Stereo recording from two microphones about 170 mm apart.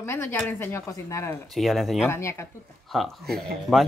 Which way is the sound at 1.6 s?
Centre (ahead or behind).